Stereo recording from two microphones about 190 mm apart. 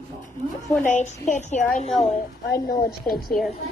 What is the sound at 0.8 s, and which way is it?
A woman's voice, 40° left (ahead or behind).